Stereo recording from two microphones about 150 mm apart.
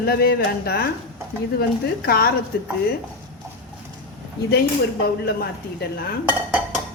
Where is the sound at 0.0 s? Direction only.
90° left.